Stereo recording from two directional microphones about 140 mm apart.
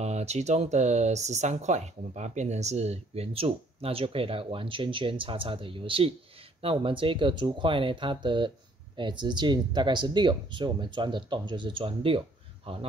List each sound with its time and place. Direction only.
0.0 s speech: 50° right (ahead or behind)